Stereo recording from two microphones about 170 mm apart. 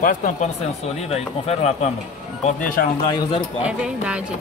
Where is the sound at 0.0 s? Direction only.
50° left (ahead or behind).